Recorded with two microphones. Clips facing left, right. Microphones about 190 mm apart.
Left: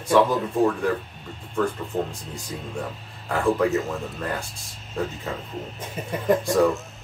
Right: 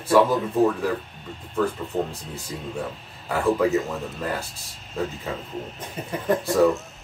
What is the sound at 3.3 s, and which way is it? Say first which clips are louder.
Speech: right 1 dB; centre (ahead or behind).